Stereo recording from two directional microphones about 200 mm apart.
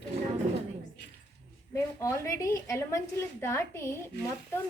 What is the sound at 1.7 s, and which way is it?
A woman's voice, 15° left (ahead or behind).